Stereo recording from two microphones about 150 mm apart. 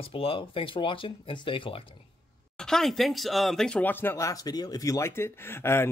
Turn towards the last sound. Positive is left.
turn(degrees=15)  # may be behind; listen again after turning